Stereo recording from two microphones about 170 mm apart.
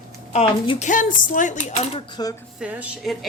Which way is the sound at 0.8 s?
50° left (ahead or behind).